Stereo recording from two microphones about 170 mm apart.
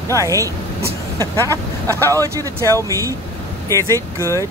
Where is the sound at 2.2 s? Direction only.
20° right (ahead or behind).